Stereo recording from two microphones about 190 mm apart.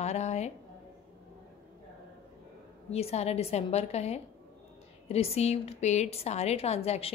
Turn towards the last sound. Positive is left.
turn(degrees=35)  # may be behind; listen again after turning